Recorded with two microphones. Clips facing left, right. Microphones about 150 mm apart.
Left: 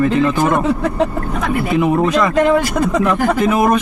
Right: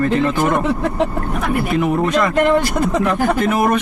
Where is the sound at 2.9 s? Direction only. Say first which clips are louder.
Left 2 dB; 30° right (ahead or behind).